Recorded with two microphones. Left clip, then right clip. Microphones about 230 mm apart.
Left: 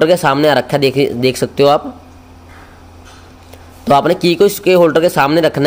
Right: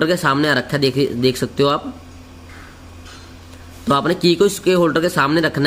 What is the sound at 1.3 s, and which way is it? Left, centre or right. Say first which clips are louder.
Speech: left 6 dB; centre.